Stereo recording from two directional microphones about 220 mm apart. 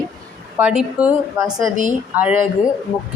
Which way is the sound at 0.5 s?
5° right (ahead or behind).